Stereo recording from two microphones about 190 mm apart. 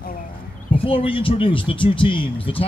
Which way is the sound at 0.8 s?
30° left (ahead or behind).